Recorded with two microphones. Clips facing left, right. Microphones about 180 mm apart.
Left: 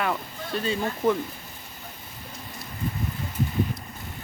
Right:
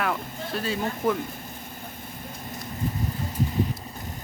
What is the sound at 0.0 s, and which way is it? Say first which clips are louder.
Speech: even; centre (ahead or behind).